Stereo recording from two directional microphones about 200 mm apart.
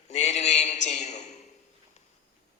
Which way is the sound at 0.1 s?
35° left (ahead or behind).